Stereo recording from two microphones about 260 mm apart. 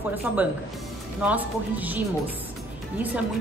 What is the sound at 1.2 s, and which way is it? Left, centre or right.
A woman's voice, centre.